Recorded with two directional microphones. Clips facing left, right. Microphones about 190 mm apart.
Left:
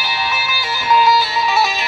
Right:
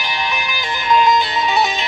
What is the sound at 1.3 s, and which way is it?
Music, 20° right (ahead or behind).